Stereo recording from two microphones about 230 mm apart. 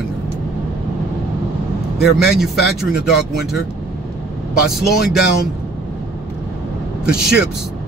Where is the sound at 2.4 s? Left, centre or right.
Centre.